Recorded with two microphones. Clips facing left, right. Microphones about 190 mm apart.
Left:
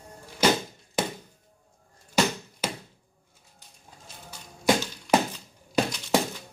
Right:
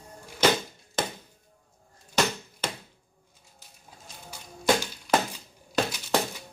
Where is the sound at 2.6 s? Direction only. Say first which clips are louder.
Left 2 dB; 10° left (ahead or behind).